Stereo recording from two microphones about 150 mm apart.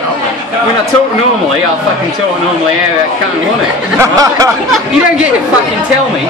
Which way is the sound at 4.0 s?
20° right (ahead or behind).